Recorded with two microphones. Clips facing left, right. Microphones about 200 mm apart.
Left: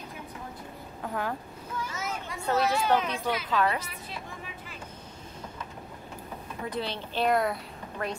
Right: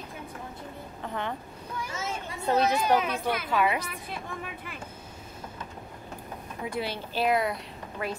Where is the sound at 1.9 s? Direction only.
25° right (ahead or behind).